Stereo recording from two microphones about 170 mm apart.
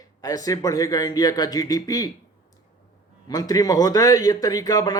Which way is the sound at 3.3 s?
20° left (ahead or behind).